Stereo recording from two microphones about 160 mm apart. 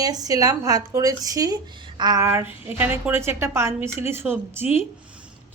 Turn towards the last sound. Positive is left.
turn(degrees=-15)  # may be behind; listen again after turning